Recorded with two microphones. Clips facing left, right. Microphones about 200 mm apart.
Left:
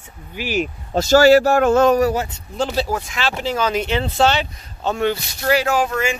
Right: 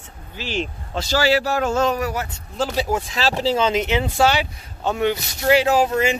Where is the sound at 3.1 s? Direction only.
35° right (ahead or behind).